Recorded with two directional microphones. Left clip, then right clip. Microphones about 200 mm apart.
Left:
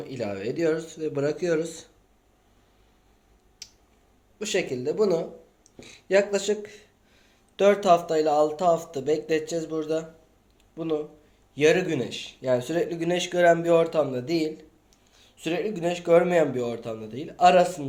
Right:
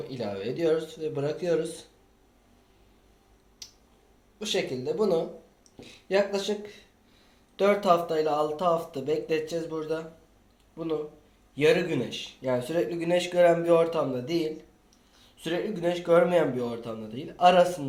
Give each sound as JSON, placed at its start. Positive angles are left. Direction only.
{"t": 0.1, "sound": "speech", "side_deg": 50}
{"t": 3.6, "sound": "a sound", "side_deg": 50}
{"t": 4.4, "sound": "speech", "side_deg": 50}